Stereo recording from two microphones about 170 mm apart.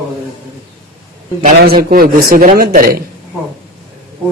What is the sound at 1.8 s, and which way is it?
Speech, 55° right (ahead or behind).